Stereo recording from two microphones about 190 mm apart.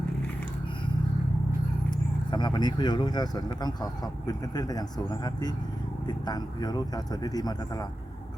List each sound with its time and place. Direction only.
1.9 s speech: 25° left (ahead or behind)